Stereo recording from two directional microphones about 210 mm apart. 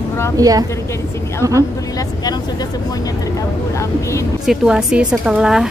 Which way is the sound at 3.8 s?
15° left (ahead or behind).